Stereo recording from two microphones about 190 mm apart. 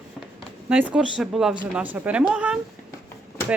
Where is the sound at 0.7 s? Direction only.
5° right (ahead or behind).